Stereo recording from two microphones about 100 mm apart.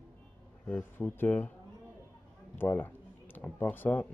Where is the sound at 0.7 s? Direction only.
20° left (ahead or behind).